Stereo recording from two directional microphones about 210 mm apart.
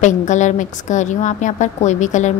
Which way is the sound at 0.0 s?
35° left (ahead or behind).